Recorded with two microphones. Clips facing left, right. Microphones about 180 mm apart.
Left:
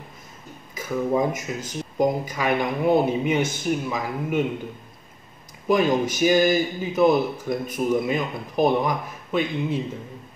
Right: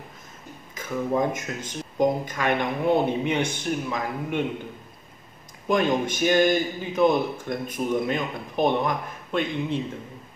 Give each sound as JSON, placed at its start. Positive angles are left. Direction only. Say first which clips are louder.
{"t": 0.7, "sound": "speech", "louder": "left 2 dB", "side_deg": 10}
{"t": 5.7, "sound": "a man's voice", "louder": "left 2 dB", "side_deg": 5}